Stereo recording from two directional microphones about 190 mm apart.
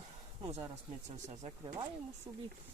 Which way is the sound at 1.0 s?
40° right (ahead or behind).